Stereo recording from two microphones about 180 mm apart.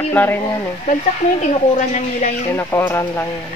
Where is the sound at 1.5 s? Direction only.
40° left (ahead or behind).